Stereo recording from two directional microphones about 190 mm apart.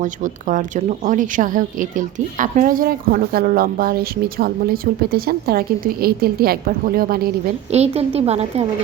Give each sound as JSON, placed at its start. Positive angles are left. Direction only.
{"t": 0.0, "sound": "speech", "side_deg": -40}
{"t": 7.7, "sound": "a woman's voice", "side_deg": -35}